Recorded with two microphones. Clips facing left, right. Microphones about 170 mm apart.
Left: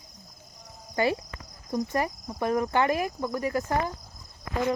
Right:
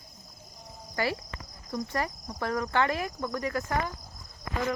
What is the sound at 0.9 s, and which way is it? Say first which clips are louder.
Speech: left 5 dB; 20° left (ahead or behind).